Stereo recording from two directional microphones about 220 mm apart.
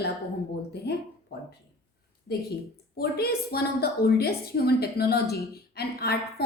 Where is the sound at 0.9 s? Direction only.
50° left (ahead or behind).